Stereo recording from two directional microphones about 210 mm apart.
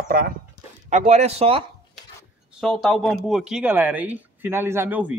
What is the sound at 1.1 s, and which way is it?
Speech, 30° right (ahead or behind).